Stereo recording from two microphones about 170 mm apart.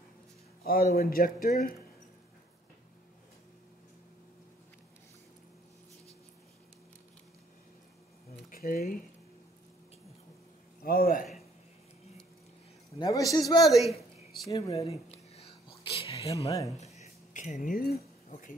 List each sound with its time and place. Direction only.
0.7 s speech: 60° left (ahead or behind)
8.5 s speech: 60° left (ahead or behind)
10.8 s speech: 60° left (ahead or behind)
13.0 s a man's voice: 20° left (ahead or behind)
13.7 s a woman's voice: centre (ahead or behind)
14.5 s a man's voice: 20° left (ahead or behind)
14.9 s whispering: 35° left (ahead or behind)
16.4 s a man's voice: 20° left (ahead or behind)
16.8 s a sound: 40° left (ahead or behind); by 17.9 s 60° left (ahead or behind)
17.9 s keys jangling: 40° left (ahead or behind)